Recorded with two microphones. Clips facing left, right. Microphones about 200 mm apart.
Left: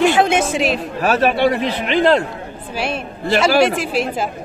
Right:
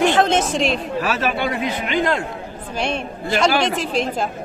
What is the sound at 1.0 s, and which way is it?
Speech, 40° left (ahead or behind).